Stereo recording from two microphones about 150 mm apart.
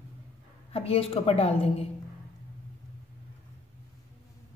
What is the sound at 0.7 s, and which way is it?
A woman's voice, 40° left (ahead or behind).